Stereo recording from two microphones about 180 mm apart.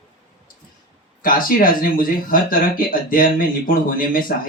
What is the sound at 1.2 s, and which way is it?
Speech, 50° left (ahead or behind).